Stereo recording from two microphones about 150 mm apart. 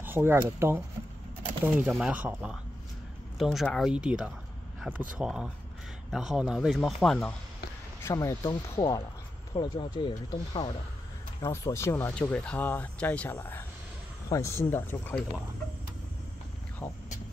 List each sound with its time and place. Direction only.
0.0 s speech: 15° right (ahead or behind)
3.3 s speech: centre (ahead or behind)
8.0 s speech: 20° left (ahead or behind)
11.4 s speech: 20° left (ahead or behind)
16.8 s speech: 20° left (ahead or behind)